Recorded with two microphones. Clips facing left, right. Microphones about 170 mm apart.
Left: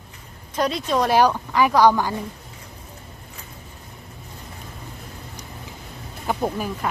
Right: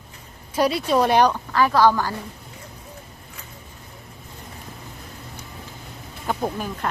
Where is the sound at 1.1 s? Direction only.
10° left (ahead or behind).